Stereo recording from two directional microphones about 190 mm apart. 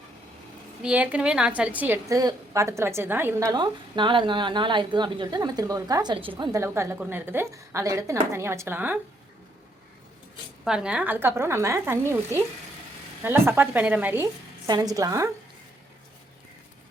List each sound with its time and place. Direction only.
0.8 s a woman's voice: 5° right (ahead or behind)
3.5 s a woman's voice: 25° right (ahead or behind)
10.6 s a woman's voice: 5° right (ahead or behind)